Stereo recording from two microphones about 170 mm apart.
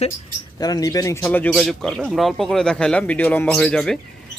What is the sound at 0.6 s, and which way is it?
Speech, 20° left (ahead or behind).